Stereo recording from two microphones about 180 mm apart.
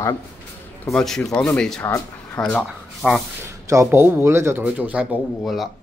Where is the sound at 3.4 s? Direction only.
15° right (ahead or behind).